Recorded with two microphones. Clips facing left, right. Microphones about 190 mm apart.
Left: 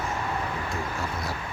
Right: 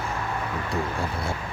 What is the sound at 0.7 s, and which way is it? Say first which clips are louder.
Speech: right 3 dB; 30° right (ahead or behind).